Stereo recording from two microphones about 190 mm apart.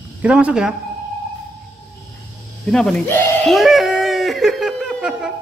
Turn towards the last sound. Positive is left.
turn(degrees=-5)  # may be behind; listen again after turning